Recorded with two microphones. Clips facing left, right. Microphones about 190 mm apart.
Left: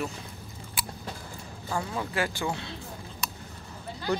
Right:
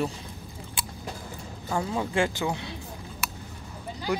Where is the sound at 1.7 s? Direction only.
20° right (ahead or behind).